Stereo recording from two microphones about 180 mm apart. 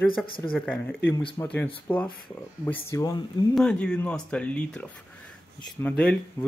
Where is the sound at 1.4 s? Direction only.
20° left (ahead or behind).